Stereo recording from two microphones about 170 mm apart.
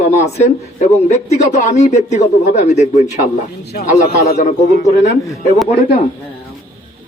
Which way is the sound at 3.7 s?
65° left (ahead or behind).